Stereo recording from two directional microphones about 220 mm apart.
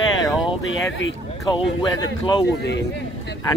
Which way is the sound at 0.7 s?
60° left (ahead or behind).